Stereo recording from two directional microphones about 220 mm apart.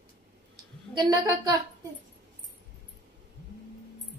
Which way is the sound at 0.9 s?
15° right (ahead or behind).